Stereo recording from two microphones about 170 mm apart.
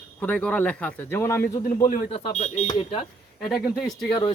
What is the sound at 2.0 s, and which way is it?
Speech, 35° left (ahead or behind).